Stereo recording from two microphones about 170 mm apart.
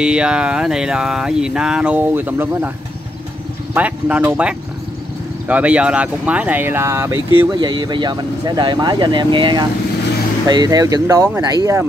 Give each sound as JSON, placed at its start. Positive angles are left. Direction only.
{"t": 0.0, "sound": "speech", "side_deg": -5}
{"t": 3.7, "sound": "speech", "side_deg": -10}
{"t": 7.5, "sound": "speech", "side_deg": -25}